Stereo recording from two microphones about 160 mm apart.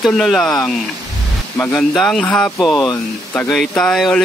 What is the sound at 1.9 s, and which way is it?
Speech, centre (ahead or behind).